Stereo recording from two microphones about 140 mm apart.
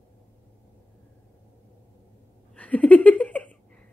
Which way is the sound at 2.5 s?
10° left (ahead or behind).